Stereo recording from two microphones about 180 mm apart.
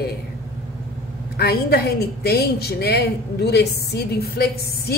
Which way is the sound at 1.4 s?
60° left (ahead or behind).